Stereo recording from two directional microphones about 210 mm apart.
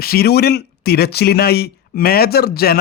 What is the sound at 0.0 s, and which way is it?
A man's voice, 45° left (ahead or behind).